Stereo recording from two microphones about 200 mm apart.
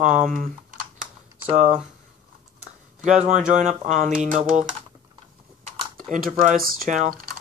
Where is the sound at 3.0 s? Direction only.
35° right (ahead or behind).